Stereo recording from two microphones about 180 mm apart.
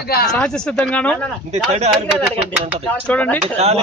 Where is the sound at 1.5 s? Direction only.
35° right (ahead or behind).